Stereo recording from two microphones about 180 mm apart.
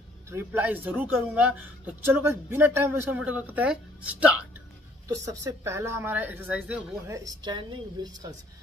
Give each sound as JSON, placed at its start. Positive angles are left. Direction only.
{"t": 0.3, "sound": "a man's voice", "side_deg": -15}
{"t": 5.0, "sound": "a man's voice", "side_deg": -20}